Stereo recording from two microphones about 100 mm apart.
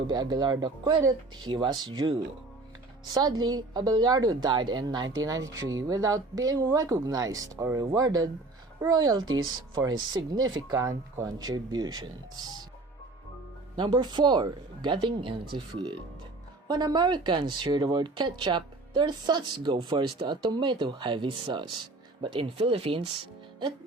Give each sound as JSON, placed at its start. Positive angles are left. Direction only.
{"t": 0.1, "sound": "a woman's voice", "side_deg": -45}
{"t": 9.7, "sound": "a woman's voice", "side_deg": -40}
{"t": 13.7, "sound": "speech", "side_deg": -50}